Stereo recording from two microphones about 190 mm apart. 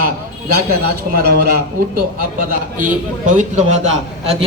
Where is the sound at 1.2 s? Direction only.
55° right (ahead or behind).